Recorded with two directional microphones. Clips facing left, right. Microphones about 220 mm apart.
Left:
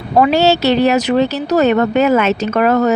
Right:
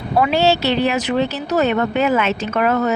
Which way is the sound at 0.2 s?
40° left (ahead or behind).